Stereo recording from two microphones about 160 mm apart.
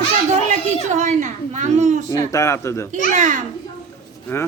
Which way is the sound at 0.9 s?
50° right (ahead or behind).